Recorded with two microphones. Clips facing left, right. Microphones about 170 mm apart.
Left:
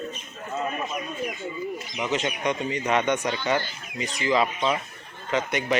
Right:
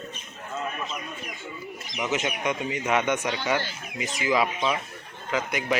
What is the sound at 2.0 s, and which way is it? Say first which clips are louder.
A man's voice: left 1 dB; 10° right (ahead or behind).